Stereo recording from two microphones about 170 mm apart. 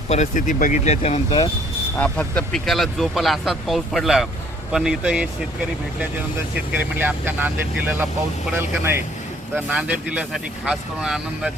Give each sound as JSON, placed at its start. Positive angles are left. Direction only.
{"t": 0.1, "sound": "speech", "side_deg": 45}
{"t": 2.0, "sound": "speech", "side_deg": 5}
{"t": 6.7, "sound": "speech", "side_deg": -10}